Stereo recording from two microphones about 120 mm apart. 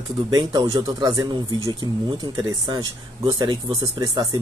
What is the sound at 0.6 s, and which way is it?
Speech, 50° right (ahead or behind).